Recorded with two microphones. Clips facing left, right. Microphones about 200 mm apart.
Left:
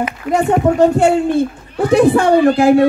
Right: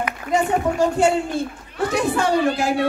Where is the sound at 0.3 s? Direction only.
60° left (ahead or behind).